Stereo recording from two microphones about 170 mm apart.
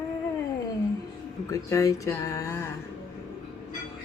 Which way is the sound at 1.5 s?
20° left (ahead or behind).